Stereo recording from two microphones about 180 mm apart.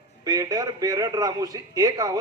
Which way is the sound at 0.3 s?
20° right (ahead or behind).